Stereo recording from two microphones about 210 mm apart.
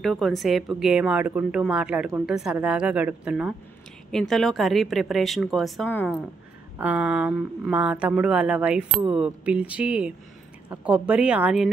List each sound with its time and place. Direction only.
0.0 s speech: centre (ahead or behind)
6.8 s speech: 5° right (ahead or behind)